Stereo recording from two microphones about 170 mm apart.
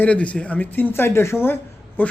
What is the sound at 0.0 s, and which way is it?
A man's voice, 10° left (ahead or behind).